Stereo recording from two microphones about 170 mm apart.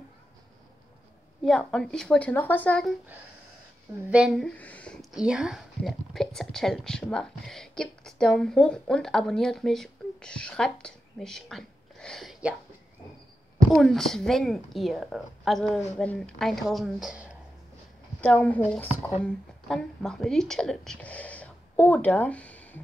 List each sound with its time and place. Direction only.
1.4 s speech: 5° left (ahead or behind)
4.1 s speech: 5° right (ahead or behind)
13.7 s speech: centre (ahead or behind)
18.2 s a woman's voice: 10° left (ahead or behind)